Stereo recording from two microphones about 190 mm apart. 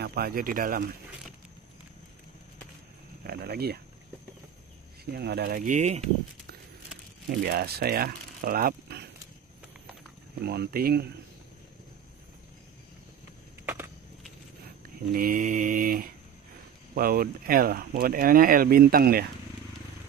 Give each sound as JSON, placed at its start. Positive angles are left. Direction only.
{"t": 0.0, "sound": "speech", "side_deg": -55}
{"t": 3.3, "sound": "speech", "side_deg": -55}
{"t": 5.1, "sound": "speech", "side_deg": -55}
{"t": 7.2, "sound": "speech", "side_deg": -55}
{"t": 10.4, "sound": "speech", "side_deg": -55}
{"t": 15.1, "sound": "speech", "side_deg": -45}